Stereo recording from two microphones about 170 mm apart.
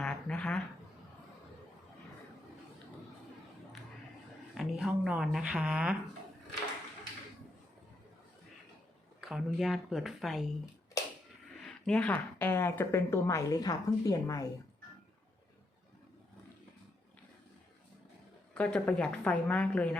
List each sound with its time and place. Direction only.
0.0 s a sound: 5° left (ahead or behind)
4.5 s speech: 5° right (ahead or behind)
9.2 s speech: 5° right (ahead or behind)
11.0 s a sound: 20° left (ahead or behind)
11.6 s a woman's voice: 5° left (ahead or behind)
18.5 s a woman's voice: 5° left (ahead or behind)